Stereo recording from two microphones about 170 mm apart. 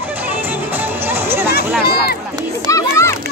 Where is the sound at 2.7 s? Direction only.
15° left (ahead or behind).